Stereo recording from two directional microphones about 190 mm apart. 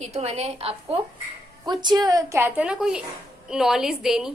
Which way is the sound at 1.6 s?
20° right (ahead or behind).